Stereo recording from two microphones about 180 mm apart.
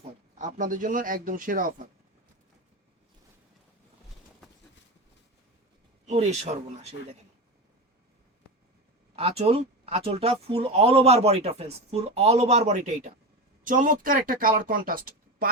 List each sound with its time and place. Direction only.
0.3 s speech: 45° right (ahead or behind)
6.1 s speech: 35° right (ahead or behind)
9.1 s speech: 35° right (ahead or behind); by 15.4 s 50° right (ahead or behind)